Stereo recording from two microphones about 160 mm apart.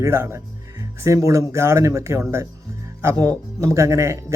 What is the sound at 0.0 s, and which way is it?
Speech, 15° right (ahead or behind).